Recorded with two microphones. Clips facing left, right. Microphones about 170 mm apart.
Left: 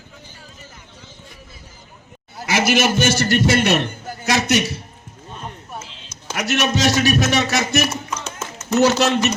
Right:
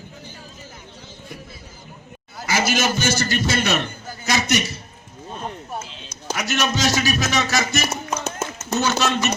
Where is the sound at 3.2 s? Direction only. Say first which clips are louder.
Left 5 dB; 70° left (ahead or behind).